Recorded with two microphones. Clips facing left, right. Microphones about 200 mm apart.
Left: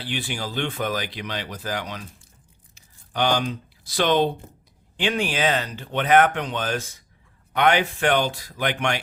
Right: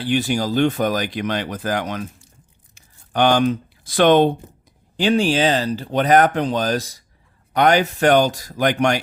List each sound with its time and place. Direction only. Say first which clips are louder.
0.0 s speech: right 10 dB; 45° right (ahead or behind)
2.7 s a sound: right 6 dB; 50° right (ahead or behind)
4.9 s speech: right 7 dB; 35° right (ahead or behind)